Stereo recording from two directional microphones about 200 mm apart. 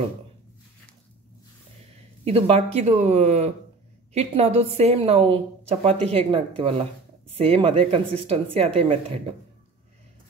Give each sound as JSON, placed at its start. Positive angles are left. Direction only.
{"t": 2.2, "sound": "a woman's voice", "side_deg": -30}